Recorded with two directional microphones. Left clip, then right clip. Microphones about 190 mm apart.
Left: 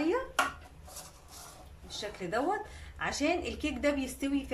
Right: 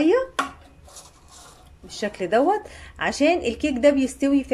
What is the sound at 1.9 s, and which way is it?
Speech, 45° right (ahead or behind).